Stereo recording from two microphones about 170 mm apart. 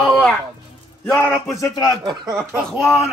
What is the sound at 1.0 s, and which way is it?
Speech, 10° left (ahead or behind).